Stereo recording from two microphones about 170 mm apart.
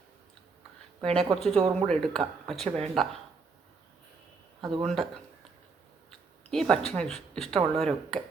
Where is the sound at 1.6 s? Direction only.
35° right (ahead or behind).